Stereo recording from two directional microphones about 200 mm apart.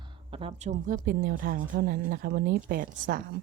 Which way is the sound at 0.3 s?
30° right (ahead or behind).